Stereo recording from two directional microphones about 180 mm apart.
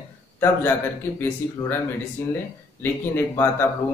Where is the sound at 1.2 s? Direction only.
10° left (ahead or behind).